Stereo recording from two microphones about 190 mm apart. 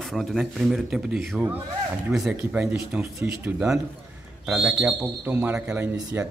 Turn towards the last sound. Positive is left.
turn(degrees=-10)  # may be behind; listen again after turning